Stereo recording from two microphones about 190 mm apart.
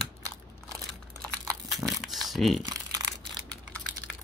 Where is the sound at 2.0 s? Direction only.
Centre (ahead or behind).